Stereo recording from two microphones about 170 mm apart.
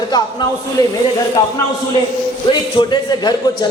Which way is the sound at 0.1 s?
25° left (ahead or behind).